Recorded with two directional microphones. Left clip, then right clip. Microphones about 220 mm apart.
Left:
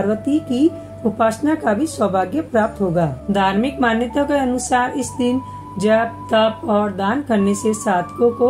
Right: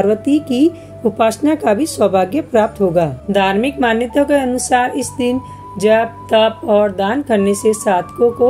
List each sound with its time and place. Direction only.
0.1 s speech: 45° right (ahead or behind)
3.3 s a woman's voice: 30° right (ahead or behind)